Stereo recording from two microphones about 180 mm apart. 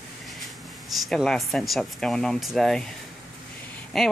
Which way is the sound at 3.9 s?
Centre (ahead or behind).